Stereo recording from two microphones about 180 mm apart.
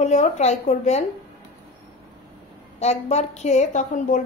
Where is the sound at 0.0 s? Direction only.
40° left (ahead or behind).